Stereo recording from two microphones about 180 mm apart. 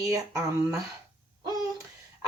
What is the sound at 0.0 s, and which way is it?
Speech, 15° right (ahead or behind).